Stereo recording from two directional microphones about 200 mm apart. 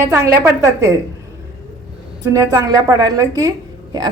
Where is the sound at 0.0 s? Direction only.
15° right (ahead or behind).